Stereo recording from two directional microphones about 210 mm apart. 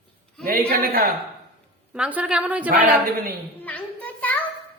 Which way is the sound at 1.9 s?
5° right (ahead or behind).